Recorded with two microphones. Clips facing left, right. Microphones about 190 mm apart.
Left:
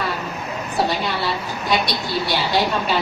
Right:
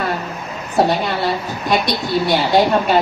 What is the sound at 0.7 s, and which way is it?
Speech, 50° right (ahead or behind).